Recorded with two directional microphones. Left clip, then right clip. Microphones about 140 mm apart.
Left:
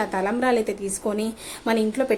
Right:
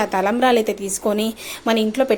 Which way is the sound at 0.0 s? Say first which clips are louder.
Right 6 dB; 20° right (ahead or behind).